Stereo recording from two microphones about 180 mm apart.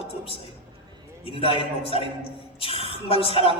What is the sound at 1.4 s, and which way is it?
A man's voice, 30° left (ahead or behind).